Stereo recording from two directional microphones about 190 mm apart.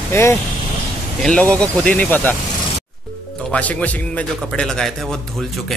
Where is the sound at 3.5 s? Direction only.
10° left (ahead or behind).